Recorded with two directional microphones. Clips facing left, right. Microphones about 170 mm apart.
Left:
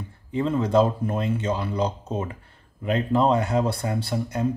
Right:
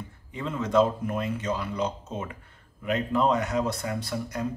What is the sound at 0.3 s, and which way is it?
Speech, 35° left (ahead or behind).